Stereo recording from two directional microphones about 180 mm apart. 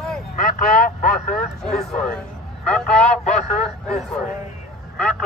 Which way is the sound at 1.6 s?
Centre (ahead or behind).